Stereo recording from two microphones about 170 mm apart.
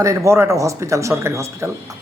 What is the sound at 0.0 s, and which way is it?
A woman's voice, 20° right (ahead or behind).